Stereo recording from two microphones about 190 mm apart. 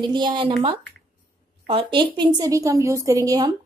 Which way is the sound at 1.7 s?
25° right (ahead or behind).